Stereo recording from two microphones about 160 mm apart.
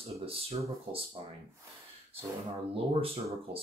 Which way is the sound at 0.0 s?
40° right (ahead or behind).